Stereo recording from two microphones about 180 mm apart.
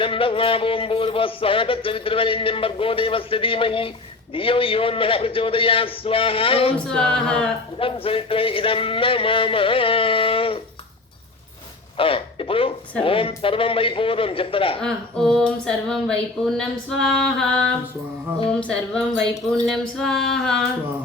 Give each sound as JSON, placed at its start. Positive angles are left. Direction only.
{"t": 0.0, "sound": "music", "side_deg": 30}
{"t": 6.7, "sound": "speech", "side_deg": 5}
{"t": 7.8, "sound": "music", "side_deg": 30}
{"t": 11.9, "sound": "speech", "side_deg": 30}
{"t": 13.0, "sound": "music", "side_deg": 30}
{"t": 14.8, "sound": "speech", "side_deg": 5}